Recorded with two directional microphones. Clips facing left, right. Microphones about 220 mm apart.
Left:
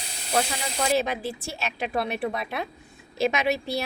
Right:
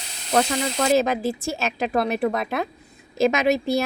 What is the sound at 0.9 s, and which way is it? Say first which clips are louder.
A woman's voice: right 6 dB; 45° right (ahead or behind).